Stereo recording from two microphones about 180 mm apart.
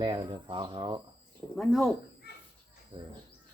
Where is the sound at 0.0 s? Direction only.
30° right (ahead or behind).